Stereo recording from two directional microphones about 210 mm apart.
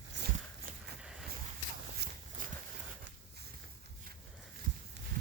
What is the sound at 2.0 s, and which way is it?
Walk, 50° right (ahead or behind).